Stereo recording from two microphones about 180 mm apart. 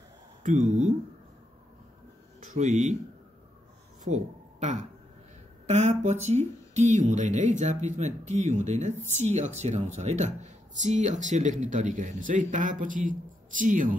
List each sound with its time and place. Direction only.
0.4 s speech: 45° right (ahead or behind)
2.5 s speech: 40° right (ahead or behind)
4.0 s a sound: 40° right (ahead or behind)
5.7 s speech: 40° right (ahead or behind)